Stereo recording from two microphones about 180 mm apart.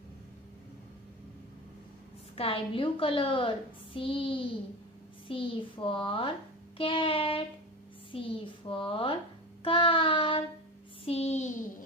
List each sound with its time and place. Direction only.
2.3 s a woman's voice: 30° left (ahead or behind)
6.8 s child singing: 30° left (ahead or behind)
8.6 s a woman's voice: 30° left (ahead or behind)
11.1 s child singing: 35° left (ahead or behind)